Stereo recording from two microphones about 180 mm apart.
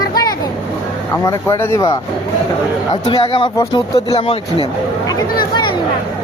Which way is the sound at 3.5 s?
20° left (ahead or behind).